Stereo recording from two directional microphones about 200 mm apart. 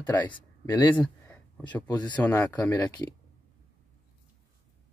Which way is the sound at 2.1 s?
10° left (ahead or behind).